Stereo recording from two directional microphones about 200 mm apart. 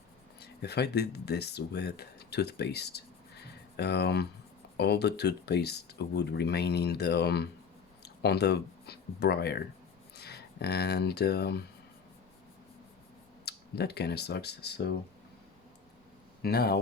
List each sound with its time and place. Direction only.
0.3 s speech: 55° left (ahead or behind)
13.4 s speech: 55° left (ahead or behind)
16.4 s speech: 50° left (ahead or behind)